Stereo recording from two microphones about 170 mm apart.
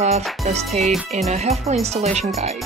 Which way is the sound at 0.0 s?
40° right (ahead or behind).